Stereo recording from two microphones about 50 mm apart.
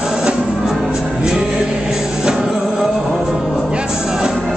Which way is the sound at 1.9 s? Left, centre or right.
Centre.